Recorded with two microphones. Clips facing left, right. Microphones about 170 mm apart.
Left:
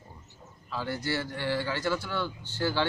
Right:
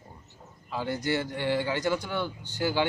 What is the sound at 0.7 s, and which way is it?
A man's voice, 20° right (ahead or behind).